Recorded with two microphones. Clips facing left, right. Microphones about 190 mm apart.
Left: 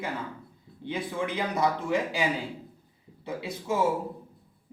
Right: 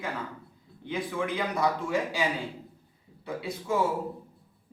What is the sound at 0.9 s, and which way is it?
A man's voice, 25° left (ahead or behind).